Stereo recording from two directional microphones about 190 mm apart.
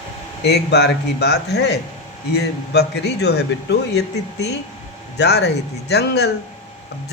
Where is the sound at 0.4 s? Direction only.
60° left (ahead or behind).